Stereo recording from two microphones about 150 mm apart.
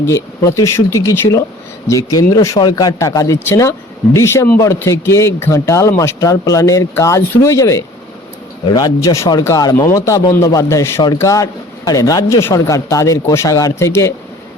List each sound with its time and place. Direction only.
0.0 s speech: 20° left (ahead or behind)